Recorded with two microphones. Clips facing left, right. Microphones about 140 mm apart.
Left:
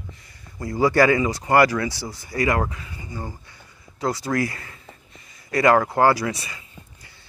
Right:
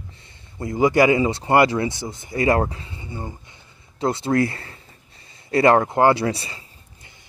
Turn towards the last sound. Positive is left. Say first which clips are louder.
# left 2 dB
turn(degrees=-30)  # may be behind; listen again after turning